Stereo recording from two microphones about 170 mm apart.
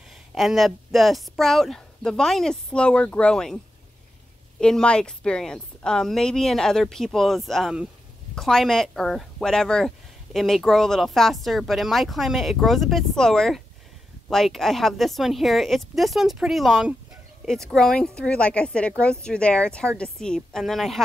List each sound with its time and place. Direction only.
0.3 s speech: centre (ahead or behind)
4.6 s speech: 5° left (ahead or behind)